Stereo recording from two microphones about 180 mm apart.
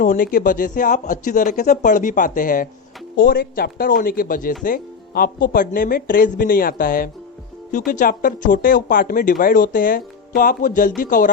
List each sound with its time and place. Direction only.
0.0 s speech: 50° left (ahead or behind)